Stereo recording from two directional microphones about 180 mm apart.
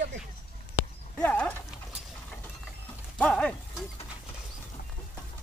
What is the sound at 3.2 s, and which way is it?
Speech, 5° left (ahead or behind).